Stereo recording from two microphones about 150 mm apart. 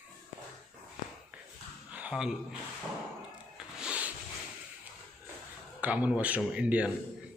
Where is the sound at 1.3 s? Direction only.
10° right (ahead or behind).